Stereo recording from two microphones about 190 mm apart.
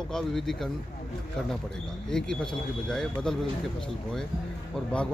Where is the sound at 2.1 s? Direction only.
5° left (ahead or behind).